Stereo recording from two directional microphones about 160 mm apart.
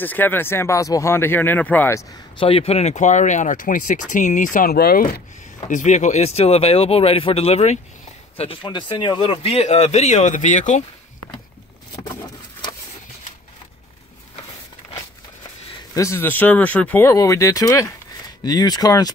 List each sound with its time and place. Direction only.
0.0 s speech: 10° left (ahead or behind)
2.3 s speech: 35° left (ahead or behind); by 5.2 s 70° left (ahead or behind)
5.7 s speech: 50° left (ahead or behind)
15.9 s speech: 20° left (ahead or behind)